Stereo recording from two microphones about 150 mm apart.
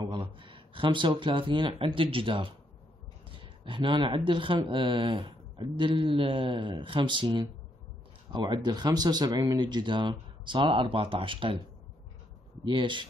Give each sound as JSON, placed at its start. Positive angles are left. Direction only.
{"t": 0.0, "sound": "speech", "side_deg": -35}
{"t": 12.6, "sound": "speech", "side_deg": -30}